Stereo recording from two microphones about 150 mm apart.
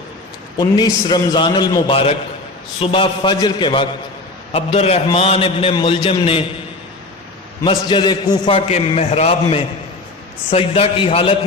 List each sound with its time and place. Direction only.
0.5 s a man's voice: 30° left (ahead or behind)
7.6 s a man's voice: 30° left (ahead or behind)